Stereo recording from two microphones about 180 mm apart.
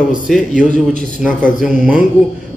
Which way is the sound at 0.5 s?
45° left (ahead or behind).